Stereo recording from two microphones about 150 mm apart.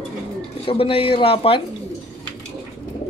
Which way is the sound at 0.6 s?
40° left (ahead or behind).